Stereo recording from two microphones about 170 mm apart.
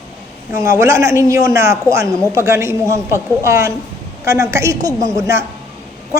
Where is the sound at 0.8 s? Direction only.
15° right (ahead or behind).